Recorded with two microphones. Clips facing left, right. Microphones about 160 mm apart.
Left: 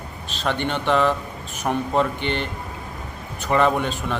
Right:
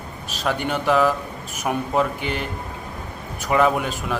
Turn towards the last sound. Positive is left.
turn(degrees=-5)  # may be behind; listen again after turning